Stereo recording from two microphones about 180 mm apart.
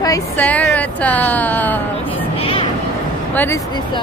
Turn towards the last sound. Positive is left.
turn(degrees=10)  # may be behind; listen again after turning